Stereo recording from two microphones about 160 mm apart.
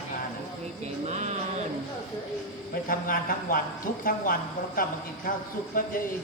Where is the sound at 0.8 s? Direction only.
45° right (ahead or behind).